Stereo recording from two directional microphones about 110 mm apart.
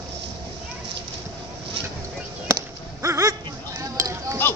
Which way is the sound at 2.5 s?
30° right (ahead or behind).